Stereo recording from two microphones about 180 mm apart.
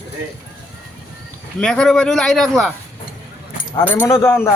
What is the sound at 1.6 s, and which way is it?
A man's voice, 5° left (ahead or behind).